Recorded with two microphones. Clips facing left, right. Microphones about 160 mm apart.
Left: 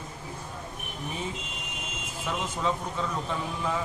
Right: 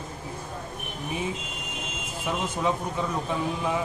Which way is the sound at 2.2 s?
15° right (ahead or behind).